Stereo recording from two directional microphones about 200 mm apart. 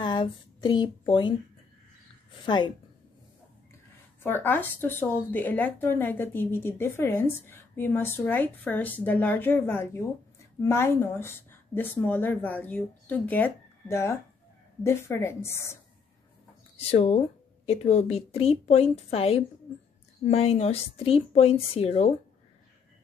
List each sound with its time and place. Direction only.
0.0 s speech: 20° left (ahead or behind)
2.4 s speech: 20° left (ahead or behind)
4.2 s speech: 10° left (ahead or behind)
16.9 s a woman's voice: 30° left (ahead or behind)